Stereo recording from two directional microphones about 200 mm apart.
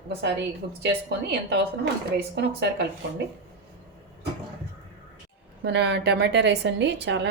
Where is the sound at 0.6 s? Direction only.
55° right (ahead or behind).